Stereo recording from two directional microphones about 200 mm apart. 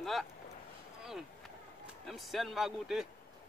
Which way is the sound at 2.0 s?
Centre (ahead or behind).